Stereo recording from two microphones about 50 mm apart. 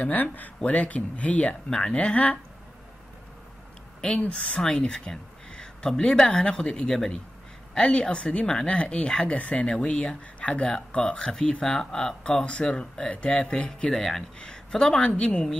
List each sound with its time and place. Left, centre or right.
0.0 s speech: left
4.2 s speech: left
4.6 s speech: centre
11.7 s speech: centre